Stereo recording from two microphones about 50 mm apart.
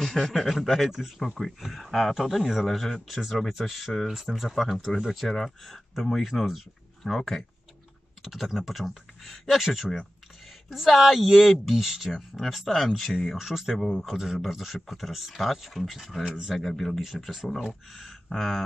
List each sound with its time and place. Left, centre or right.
0.0 s speech: centre
2.2 s speech: centre
16.3 s speech: centre
16.5 s speech: centre
18.3 s speech: centre